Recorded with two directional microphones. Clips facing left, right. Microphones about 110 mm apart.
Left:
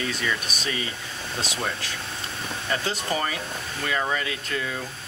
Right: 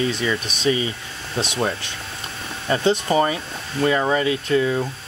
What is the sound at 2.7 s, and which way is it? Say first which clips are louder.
Speech: right 9 dB; 25° right (ahead or behind).